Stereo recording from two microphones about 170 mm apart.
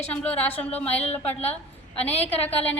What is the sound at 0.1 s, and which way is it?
A woman's voice, 10° left (ahead or behind).